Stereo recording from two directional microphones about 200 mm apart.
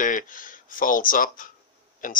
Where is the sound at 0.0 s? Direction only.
40° left (ahead or behind).